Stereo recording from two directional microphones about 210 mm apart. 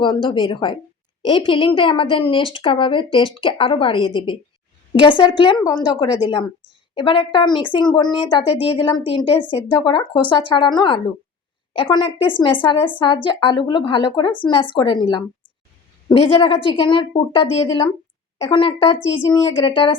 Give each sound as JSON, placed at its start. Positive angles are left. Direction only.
{"t": 0.0, "sound": "a woman's voice", "side_deg": 25}